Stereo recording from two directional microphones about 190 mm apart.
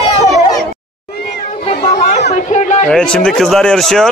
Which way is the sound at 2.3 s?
40° left (ahead or behind).